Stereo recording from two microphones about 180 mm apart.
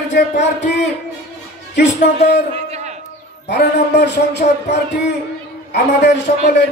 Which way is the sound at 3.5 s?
70° left (ahead or behind).